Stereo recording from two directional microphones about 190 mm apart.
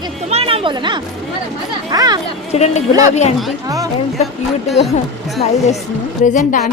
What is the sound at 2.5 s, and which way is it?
Speech, 35° left (ahead or behind).